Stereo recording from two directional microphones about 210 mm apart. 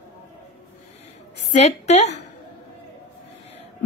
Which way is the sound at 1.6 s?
30° left (ahead or behind).